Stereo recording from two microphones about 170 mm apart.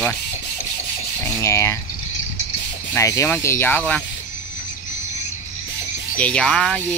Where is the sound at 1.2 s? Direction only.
15° left (ahead or behind).